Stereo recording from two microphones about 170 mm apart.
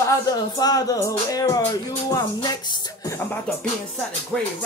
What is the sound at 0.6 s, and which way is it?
Music, 20° left (ahead or behind).